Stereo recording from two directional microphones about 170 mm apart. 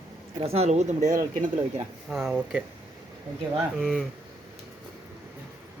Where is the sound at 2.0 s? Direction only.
5° right (ahead or behind).